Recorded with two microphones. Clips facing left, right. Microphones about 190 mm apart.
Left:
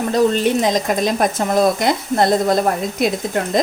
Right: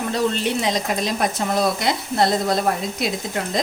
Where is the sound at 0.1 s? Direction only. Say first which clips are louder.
Left 7 dB; 45° left (ahead or behind).